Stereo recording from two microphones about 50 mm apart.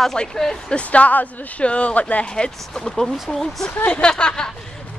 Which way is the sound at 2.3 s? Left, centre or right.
Centre.